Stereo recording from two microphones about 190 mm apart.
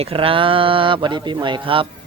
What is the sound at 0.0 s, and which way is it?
Speech, 30° right (ahead or behind).